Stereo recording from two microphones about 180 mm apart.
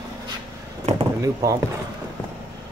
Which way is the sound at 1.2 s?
20° right (ahead or behind).